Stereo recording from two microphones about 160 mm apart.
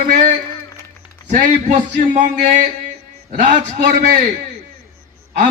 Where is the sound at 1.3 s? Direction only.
55° right (ahead or behind).